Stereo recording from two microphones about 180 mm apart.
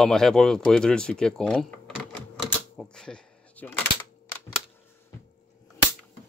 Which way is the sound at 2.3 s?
5° left (ahead or behind).